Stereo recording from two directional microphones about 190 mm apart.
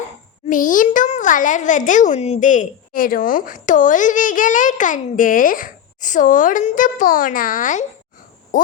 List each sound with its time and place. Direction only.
0.4 s a child's voice: 45° left (ahead or behind)